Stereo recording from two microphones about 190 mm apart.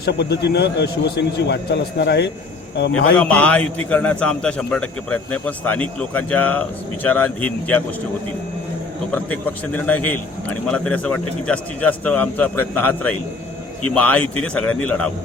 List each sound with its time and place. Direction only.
0.0 s a man's voice: 60° left (ahead or behind)
3.2 s a man's voice: 5° left (ahead or behind)
9.1 s a man's voice: 10° left (ahead or behind)